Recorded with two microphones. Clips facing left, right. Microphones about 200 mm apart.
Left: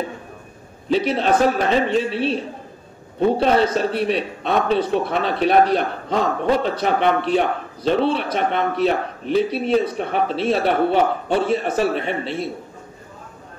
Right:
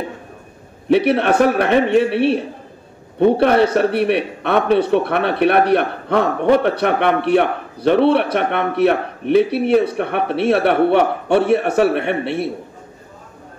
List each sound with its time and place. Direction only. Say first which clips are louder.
0.8 s a man's voice: right 4 dB; 65° right (ahead or behind)